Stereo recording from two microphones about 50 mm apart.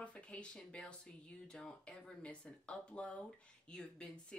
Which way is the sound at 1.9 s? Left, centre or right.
Left.